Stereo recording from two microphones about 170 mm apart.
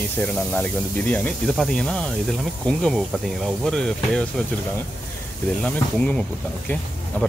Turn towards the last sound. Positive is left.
turn(degrees=10)  # may be behind; listen again after turning